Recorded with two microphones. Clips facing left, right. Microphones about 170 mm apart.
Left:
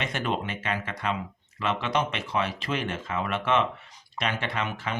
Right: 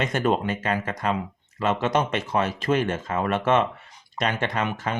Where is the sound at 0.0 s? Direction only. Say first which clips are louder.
Right 6 dB; 45° right (ahead or behind).